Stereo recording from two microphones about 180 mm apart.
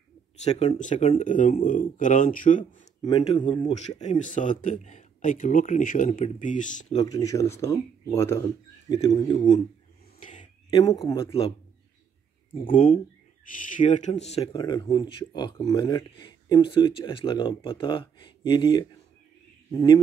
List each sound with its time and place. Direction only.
0.4 s speech: 35° left (ahead or behind)
3.1 s speech: 30° left (ahead or behind)
7.0 s speech: 20° left (ahead or behind)
10.2 s a sound: 45° left (ahead or behind)
10.8 s speech: 20° left (ahead or behind)
12.6 s speech: 45° left (ahead or behind)
14.5 s speech: 25° left (ahead or behind)